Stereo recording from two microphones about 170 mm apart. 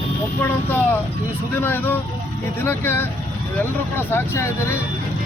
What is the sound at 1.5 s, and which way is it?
Speech, 10° left (ahead or behind).